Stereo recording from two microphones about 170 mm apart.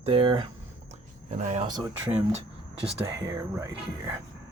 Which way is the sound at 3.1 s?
15° right (ahead or behind).